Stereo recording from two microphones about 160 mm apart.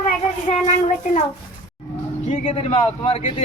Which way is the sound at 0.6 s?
50° left (ahead or behind).